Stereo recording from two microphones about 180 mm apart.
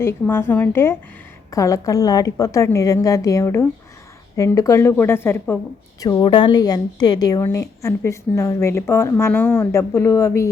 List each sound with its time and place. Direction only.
0.0 s a woman's voice: 15° left (ahead or behind)